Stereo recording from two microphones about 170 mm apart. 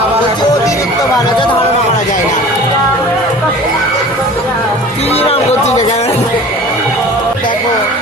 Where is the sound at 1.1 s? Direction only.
30° left (ahead or behind).